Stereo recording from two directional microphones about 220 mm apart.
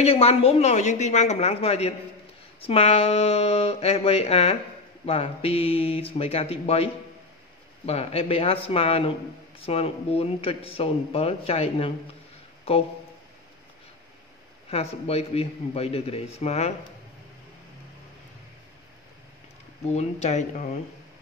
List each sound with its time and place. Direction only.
0.0 s speech: 25° left (ahead or behind)
14.7 s speech: 30° left (ahead or behind)
19.9 s speech: 30° left (ahead or behind)